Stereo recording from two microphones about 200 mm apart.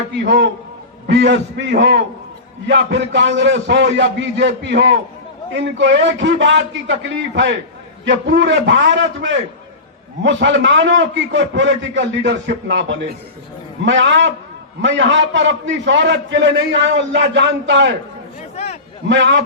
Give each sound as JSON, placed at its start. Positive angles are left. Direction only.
{"t": 0.3, "sound": "a man's voice", "side_deg": -60}
{"t": 18.5, "sound": "a sound", "side_deg": 35}
{"t": 19.0, "sound": "a man's voice", "side_deg": -65}